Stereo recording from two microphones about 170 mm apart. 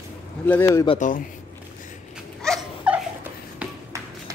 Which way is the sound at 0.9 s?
50° left (ahead or behind).